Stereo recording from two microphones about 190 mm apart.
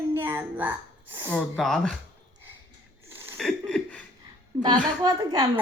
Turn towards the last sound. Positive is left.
turn(degrees=-20)  # may be behind; listen again after turning